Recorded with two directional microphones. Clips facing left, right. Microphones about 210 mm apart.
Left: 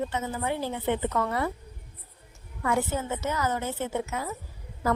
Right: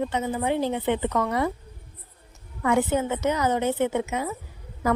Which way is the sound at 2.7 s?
90° right.